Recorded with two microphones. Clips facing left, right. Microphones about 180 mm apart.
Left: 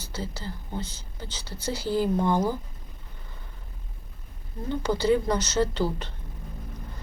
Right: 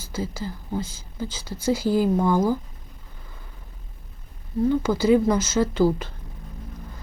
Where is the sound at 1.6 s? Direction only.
90° right.